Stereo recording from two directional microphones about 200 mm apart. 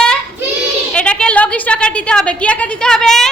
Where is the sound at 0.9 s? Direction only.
5° left (ahead or behind).